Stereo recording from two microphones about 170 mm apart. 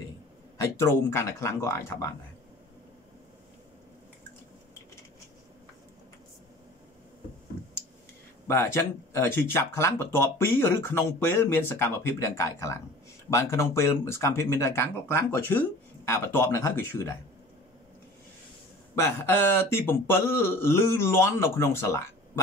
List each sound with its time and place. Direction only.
0.6 s speech: 15° left (ahead or behind)
8.5 s speech: 15° left (ahead or behind)
18.9 s speech: 15° left (ahead or behind)